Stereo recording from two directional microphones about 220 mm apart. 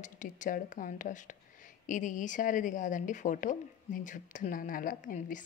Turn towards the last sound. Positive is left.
turn(degrees=35)  # may be behind; listen again after turning